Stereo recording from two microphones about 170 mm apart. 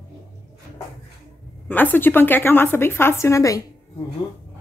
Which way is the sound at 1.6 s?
10° left (ahead or behind).